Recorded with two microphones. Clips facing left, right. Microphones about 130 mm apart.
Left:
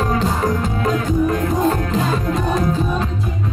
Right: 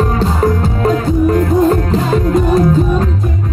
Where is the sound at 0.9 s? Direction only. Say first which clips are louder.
Right 5 dB; 40° right (ahead or behind).